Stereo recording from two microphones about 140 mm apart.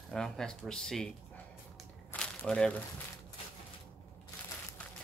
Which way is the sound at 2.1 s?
5° left (ahead or behind).